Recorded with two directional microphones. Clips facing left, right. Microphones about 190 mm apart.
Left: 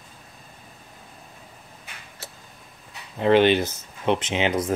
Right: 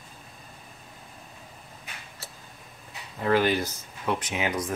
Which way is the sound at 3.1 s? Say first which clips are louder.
Left 6 dB; 25° left (ahead or behind).